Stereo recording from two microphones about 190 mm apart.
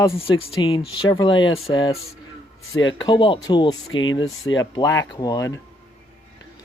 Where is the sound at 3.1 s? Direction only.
25° left (ahead or behind).